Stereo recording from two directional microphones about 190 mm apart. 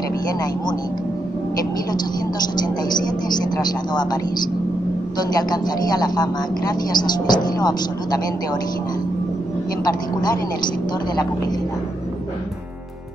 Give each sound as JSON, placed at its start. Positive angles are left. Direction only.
{"t": 3.5, "sound": "speech", "side_deg": 20}
{"t": 5.5, "sound": "speech", "side_deg": 20}